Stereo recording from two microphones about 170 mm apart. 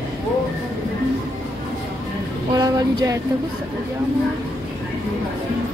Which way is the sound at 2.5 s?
25° right (ahead or behind).